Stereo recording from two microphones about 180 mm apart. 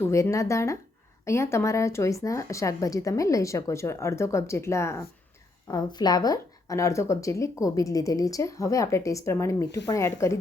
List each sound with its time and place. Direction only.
0.0 s speech: 15° left (ahead or behind)